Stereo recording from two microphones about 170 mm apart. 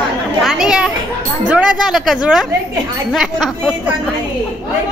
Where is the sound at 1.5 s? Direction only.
5° right (ahead or behind).